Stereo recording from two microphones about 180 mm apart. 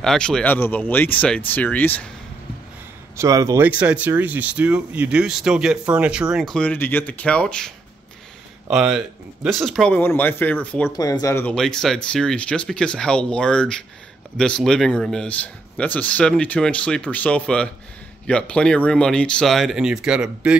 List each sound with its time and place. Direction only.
0.0 s speech: 5° left (ahead or behind)
3.2 s speech: 20° right (ahead or behind); by 10.9 s 10° left (ahead or behind)
10.9 s speech: 20° left (ahead or behind)
11.5 s speech: 5° left (ahead or behind)